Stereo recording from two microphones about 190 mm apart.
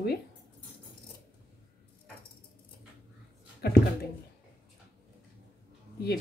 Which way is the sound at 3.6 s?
60° left (ahead or behind).